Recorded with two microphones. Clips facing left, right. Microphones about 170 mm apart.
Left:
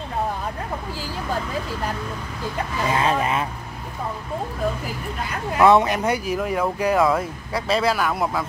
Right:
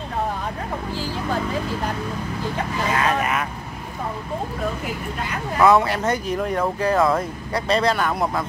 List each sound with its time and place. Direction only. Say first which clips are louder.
2.9 s speech: left 1 dB; 25° left (ahead or behind)
5.7 s speech: left 1 dB; 20° left (ahead or behind); by 8.5 s centre (ahead or behind)